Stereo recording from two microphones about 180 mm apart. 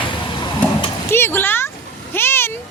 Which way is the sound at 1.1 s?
15° left (ahead or behind).